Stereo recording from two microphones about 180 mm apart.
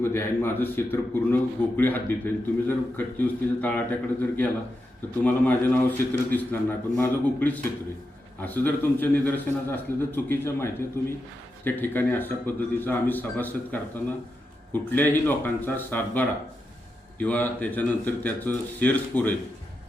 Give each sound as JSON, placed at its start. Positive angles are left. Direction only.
{"t": 0.0, "sound": "a man's voice", "side_deg": 15}